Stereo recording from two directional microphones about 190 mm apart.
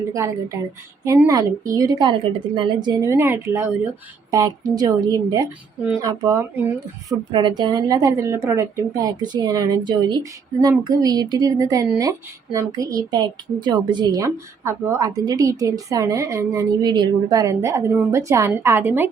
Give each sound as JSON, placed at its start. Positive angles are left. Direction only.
{"t": 0.1, "sound": "a woman's voice", "side_deg": -15}